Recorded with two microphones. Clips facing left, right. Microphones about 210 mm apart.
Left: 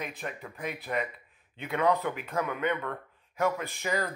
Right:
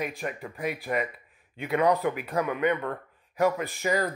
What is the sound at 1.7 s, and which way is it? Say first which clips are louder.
Speech: right 3 dB; 15° right (ahead or behind).